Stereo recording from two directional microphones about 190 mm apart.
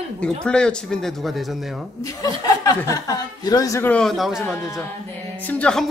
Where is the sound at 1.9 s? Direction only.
20° left (ahead or behind).